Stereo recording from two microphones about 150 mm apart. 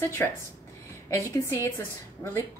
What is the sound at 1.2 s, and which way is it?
A woman's voice, 20° left (ahead or behind).